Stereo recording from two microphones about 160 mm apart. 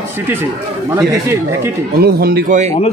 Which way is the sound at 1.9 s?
75° right (ahead or behind).